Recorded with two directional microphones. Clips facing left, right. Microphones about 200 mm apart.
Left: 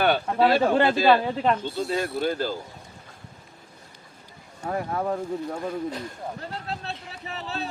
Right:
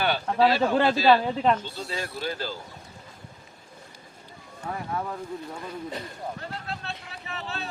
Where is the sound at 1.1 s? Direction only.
Centre (ahead or behind).